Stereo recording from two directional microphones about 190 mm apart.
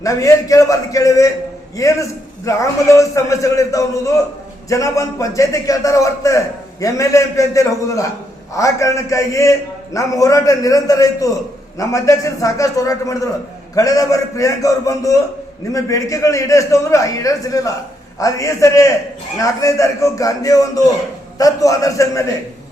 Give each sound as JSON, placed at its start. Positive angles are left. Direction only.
{"t": 0.0, "sound": "a man's voice", "side_deg": 15}